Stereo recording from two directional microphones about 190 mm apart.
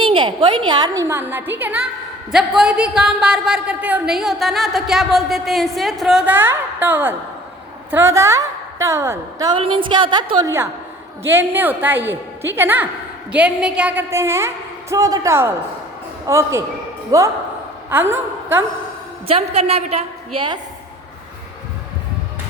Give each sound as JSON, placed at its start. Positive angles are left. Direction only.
{"t": 0.0, "sound": "a woman's voice", "side_deg": -25}
{"t": 19.3, "sound": "a woman's voice", "side_deg": -35}